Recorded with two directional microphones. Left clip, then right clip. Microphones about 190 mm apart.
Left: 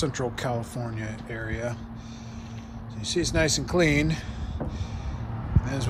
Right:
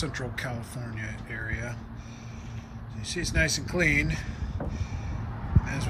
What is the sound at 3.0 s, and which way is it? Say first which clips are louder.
Speech: left 3 dB; 20° left (ahead or behind).